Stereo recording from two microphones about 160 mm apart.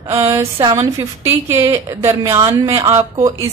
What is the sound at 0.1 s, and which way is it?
Speech, 15° right (ahead or behind).